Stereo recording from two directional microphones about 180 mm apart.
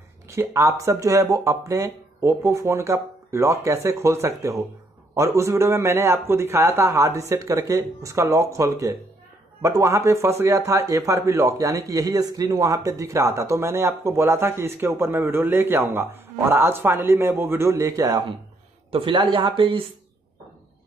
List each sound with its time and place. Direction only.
0.3 s speech: 15° right (ahead or behind)
18.9 s speech: 30° right (ahead or behind)